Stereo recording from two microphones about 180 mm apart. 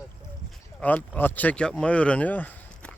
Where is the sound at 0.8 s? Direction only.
10° left (ahead or behind).